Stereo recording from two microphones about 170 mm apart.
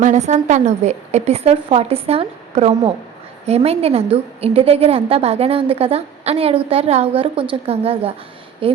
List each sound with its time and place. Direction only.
0.0 s a woman's voice: 45° right (ahead or behind)